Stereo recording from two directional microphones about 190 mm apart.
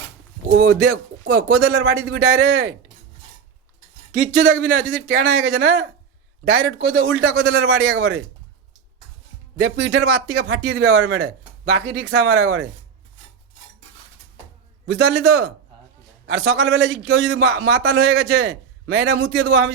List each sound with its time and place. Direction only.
0.5 s a man's voice: 90° right
4.2 s a man's voice: 50° right (ahead or behind)
6.4 s speech: 70° right (ahead or behind); by 7.2 s 50° right (ahead or behind)
7.2 s a man's voice: 90° right
9.6 s a man's voice: 90° right
11.9 s a man's voice: 75° right (ahead or behind)
14.8 s a man's voice: 90° right